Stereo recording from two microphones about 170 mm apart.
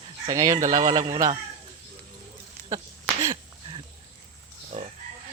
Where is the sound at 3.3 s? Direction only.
30° right (ahead or behind).